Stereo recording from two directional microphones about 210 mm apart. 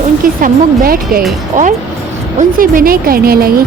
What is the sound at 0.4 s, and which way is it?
Speech, 45° right (ahead or behind).